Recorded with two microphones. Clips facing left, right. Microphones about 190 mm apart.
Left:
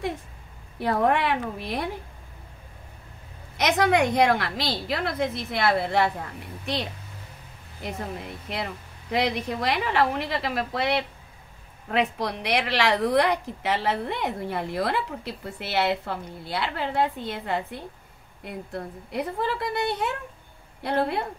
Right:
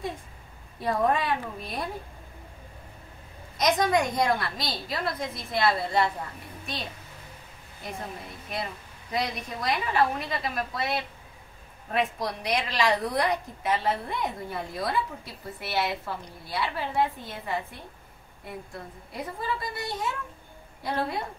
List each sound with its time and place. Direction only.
0.7 s a woman's voice: 70° left (ahead or behind)
3.5 s a woman's voice: 70° left (ahead or behind)
9.1 s a woman's voice: 75° left (ahead or behind)